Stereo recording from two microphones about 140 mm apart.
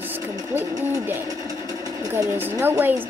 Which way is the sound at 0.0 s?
15° right (ahead or behind).